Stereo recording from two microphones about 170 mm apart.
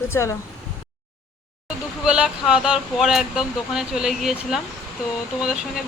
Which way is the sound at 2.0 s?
5° right (ahead or behind).